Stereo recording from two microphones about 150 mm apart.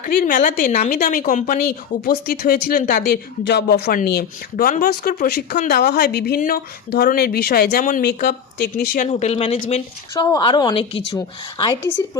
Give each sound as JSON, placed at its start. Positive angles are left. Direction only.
{"t": 0.0, "sound": "a woman's voice", "side_deg": 70}
{"t": 1.5, "sound": "speech", "side_deg": 80}
{"t": 8.9, "sound": "speech", "side_deg": 55}
{"t": 10.3, "sound": "a woman's voice", "side_deg": 30}
{"t": 11.8, "sound": "speech", "side_deg": 15}